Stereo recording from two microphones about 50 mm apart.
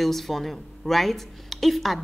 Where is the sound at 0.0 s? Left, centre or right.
Centre.